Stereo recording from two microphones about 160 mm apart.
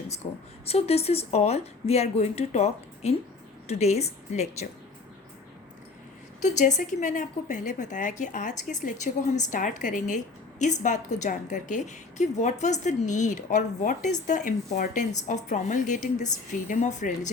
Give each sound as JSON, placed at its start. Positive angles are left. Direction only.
{"t": 0.6, "sound": "a woman's voice", "side_deg": 40}
{"t": 6.4, "sound": "a woman's voice", "side_deg": 45}